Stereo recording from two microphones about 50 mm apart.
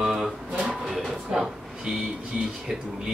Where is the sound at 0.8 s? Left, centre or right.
Centre.